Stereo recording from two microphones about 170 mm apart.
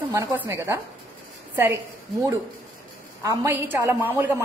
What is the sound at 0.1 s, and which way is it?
Speech, 10° right (ahead or behind).